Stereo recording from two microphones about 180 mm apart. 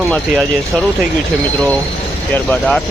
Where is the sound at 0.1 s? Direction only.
5° left (ahead or behind).